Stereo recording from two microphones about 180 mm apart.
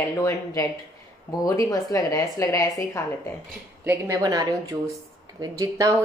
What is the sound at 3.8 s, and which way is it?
A woman's voice, 15° right (ahead or behind).